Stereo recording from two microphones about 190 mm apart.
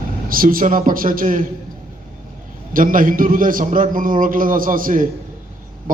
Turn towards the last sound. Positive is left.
turn(degrees=-45)  # may be behind; listen again after turning